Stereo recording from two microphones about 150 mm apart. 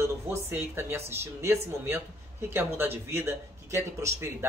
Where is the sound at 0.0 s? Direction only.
15° right (ahead or behind).